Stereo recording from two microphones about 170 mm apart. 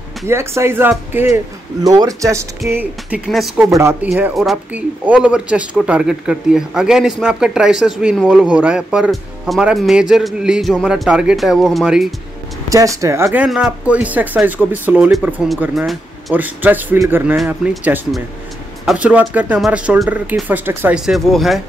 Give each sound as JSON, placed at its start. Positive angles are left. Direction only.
{"t": 0.3, "sound": "speech", "side_deg": -15}
{"t": 3.6, "sound": "speech", "side_deg": -15}
{"t": 4.1, "sound": "speech", "side_deg": 0}
{"t": 12.6, "sound": "speech", "side_deg": -20}